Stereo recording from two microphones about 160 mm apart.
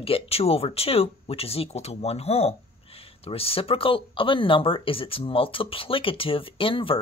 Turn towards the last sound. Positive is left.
turn(degrees=35)  # may be behind; listen again after turning